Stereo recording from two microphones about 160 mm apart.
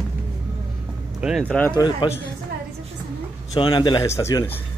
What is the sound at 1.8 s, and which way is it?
Speech, 30° left (ahead or behind).